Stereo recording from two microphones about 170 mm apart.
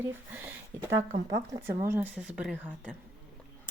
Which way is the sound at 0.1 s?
10° right (ahead or behind).